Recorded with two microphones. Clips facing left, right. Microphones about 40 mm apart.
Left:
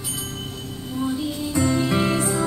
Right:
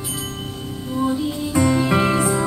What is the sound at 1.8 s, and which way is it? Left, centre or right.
Music, right.